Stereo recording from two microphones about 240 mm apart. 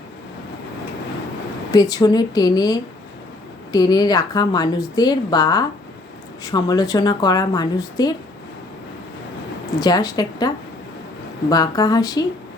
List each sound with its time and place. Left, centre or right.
1.7 s a woman's voice: centre
9.8 s a woman's voice: centre